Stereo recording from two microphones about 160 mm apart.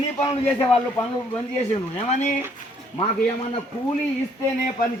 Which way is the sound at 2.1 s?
45° left (ahead or behind).